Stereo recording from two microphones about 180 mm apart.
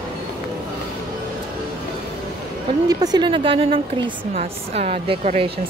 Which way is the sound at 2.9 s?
20° right (ahead or behind).